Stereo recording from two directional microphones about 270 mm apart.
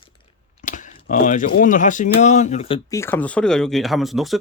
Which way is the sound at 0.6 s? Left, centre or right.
Left.